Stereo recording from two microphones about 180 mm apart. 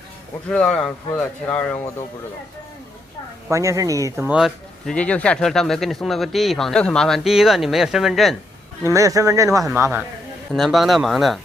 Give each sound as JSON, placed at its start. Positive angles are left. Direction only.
{"t": 0.5, "sound": "speech", "side_deg": 5}
{"t": 3.4, "sound": "speech", "side_deg": -15}
{"t": 4.3, "sound": "speech", "side_deg": 0}
{"t": 8.8, "sound": "speech", "side_deg": -15}
{"t": 10.5, "sound": "speech", "side_deg": 0}